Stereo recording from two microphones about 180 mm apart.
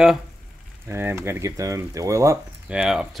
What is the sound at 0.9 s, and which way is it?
Speech, 15° right (ahead or behind).